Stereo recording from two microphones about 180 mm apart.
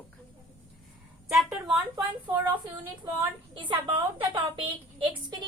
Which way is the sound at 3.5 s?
25° right (ahead or behind).